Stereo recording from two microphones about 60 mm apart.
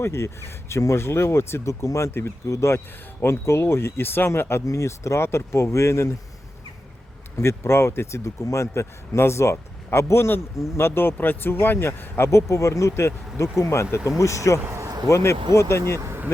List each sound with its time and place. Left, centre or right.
0.0 s speech: left
1.8 s speech: left
2.5 s speech: left
4.6 s speech: left
7.3 s speech: left
14.2 s speech: left